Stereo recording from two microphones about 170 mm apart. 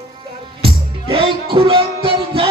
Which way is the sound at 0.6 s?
35° right (ahead or behind).